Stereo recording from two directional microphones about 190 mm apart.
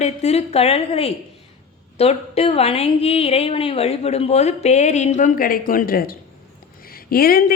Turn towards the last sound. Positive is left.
turn(degrees=50)  # may be behind; listen again after turning